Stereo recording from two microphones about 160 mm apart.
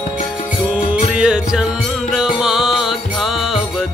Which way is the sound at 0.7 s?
5° right (ahead or behind).